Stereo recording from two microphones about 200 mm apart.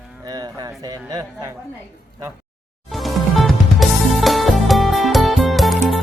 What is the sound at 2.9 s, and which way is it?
Music, centre (ahead or behind).